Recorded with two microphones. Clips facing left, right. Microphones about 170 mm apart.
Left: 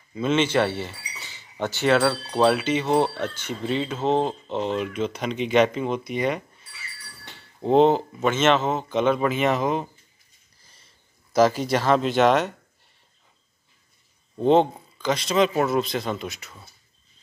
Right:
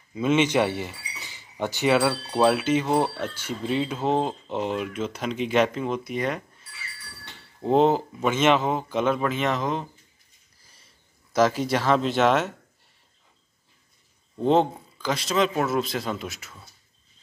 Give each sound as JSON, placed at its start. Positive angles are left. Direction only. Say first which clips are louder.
{"t": 0.1, "sound": "speech", "louder": "even", "side_deg": -10}
{"t": 7.6, "sound": "a man's voice", "louder": "left 2 dB", "side_deg": -5}
{"t": 11.3, "sound": "a man's voice", "louder": "left 2 dB", "side_deg": 0}
{"t": 14.4, "sound": "a man's voice", "louder": "left 2 dB", "side_deg": 0}